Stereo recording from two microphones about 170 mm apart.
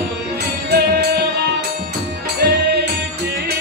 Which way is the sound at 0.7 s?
70° right (ahead or behind).